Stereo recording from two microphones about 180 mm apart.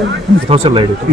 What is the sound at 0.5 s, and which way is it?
Speech, 30° right (ahead or behind).